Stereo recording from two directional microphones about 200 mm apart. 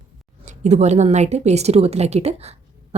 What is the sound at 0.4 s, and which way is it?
Speech, 35° right (ahead or behind).